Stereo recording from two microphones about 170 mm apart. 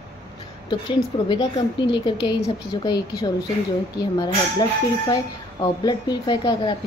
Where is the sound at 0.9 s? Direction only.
30° left (ahead or behind).